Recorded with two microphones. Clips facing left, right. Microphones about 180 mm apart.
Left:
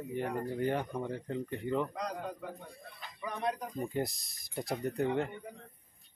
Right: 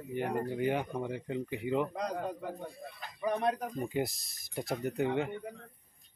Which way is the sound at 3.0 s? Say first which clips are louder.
Right 7 dB; 50° right (ahead or behind).